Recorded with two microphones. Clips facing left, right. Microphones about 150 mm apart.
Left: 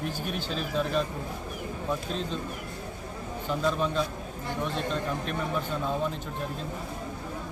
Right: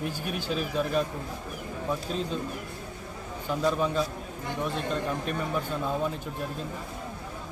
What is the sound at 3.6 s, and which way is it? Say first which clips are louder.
Speech: right 2 dB; 10° right (ahead or behind).